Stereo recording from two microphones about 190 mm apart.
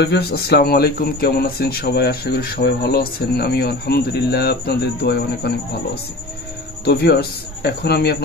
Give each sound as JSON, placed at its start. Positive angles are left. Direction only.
{"t": 0.0, "sound": "speech", "side_deg": 60}
{"t": 6.8, "sound": "a man's voice", "side_deg": 55}